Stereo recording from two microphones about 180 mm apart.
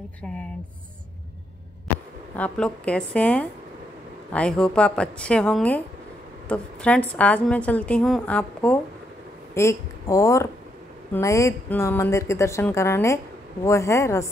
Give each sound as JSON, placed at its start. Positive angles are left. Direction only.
{"t": 2.3, "sound": "a woman's voice", "side_deg": 5}